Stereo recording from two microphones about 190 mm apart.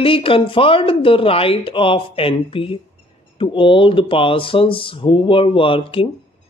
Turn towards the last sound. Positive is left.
turn(degrees=30)  # may be behind; listen again after turning